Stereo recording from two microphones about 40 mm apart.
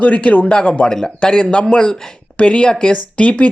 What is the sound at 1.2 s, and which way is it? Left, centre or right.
Speech, left.